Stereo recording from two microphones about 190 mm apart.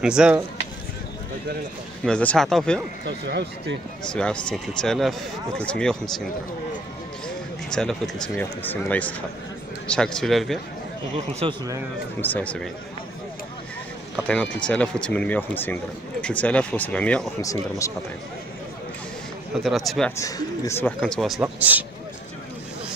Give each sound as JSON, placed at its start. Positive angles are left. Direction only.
{"t": 0.0, "sound": "speech", "side_deg": -5}
{"t": 2.0, "sound": "speech", "side_deg": 5}
{"t": 3.1, "sound": "speech", "side_deg": -65}
{"t": 4.1, "sound": "speech", "side_deg": 5}
{"t": 7.2, "sound": "speech", "side_deg": 5}
{"t": 11.4, "sound": "speech", "side_deg": -30}
{"t": 12.2, "sound": "speech", "side_deg": 10}
{"t": 14.1, "sound": "speech", "side_deg": 5}
{"t": 17.4, "sound": "speech", "side_deg": 15}
{"t": 19.5, "sound": "speech", "side_deg": 0}
{"t": 20.2, "sound": "speech", "side_deg": 15}
{"t": 21.0, "sound": "speech", "side_deg": 5}
{"t": 21.4, "sound": "speech", "side_deg": -10}